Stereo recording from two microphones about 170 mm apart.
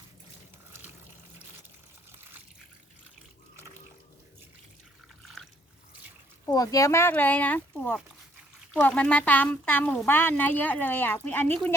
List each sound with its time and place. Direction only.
6.4 s speech: 20° left (ahead or behind)